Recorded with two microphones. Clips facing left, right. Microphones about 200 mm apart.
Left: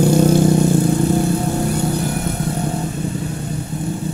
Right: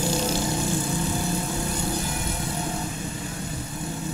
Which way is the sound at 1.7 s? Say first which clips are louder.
Left 9 dB; 65° left (ahead or behind).